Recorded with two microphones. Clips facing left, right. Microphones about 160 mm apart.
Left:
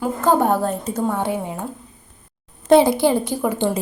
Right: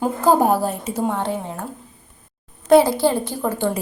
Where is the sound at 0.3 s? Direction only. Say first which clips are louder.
Right 1 dB; 10° right (ahead or behind).